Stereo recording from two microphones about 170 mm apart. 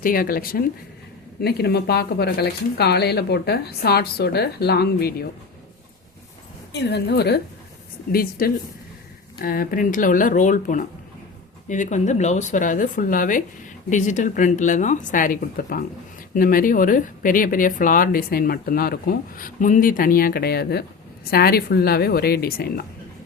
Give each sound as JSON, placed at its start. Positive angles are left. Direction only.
{"t": 0.0, "sound": "speech", "side_deg": 55}
{"t": 1.4, "sound": "speech", "side_deg": 70}
{"t": 6.7, "sound": "speech", "side_deg": 80}
{"t": 8.1, "sound": "speech", "side_deg": 60}